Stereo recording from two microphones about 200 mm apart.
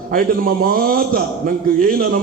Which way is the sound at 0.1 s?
45° right (ahead or behind).